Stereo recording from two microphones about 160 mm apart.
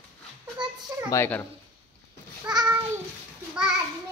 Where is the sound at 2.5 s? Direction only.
25° right (ahead or behind).